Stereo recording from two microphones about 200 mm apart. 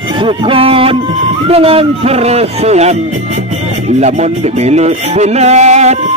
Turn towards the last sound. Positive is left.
turn(degrees=-35)  # may be behind; listen again after turning